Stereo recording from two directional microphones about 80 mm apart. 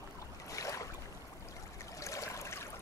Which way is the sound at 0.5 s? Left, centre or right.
Left.